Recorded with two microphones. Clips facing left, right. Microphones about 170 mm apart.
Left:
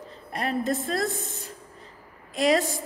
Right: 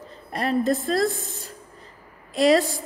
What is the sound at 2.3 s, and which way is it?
Speech, 35° right (ahead or behind).